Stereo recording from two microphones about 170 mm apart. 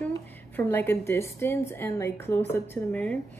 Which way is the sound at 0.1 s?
10° left (ahead or behind).